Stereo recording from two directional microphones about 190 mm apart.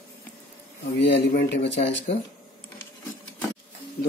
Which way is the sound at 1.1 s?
60° left (ahead or behind).